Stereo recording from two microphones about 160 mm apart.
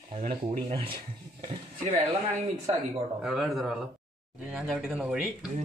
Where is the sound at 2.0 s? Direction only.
45° right (ahead or behind).